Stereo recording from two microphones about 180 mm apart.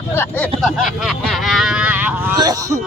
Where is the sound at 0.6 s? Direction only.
Centre (ahead or behind); by 2.7 s 20° right (ahead or behind).